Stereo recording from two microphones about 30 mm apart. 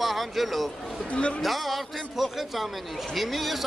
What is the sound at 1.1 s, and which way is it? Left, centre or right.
Speech, left.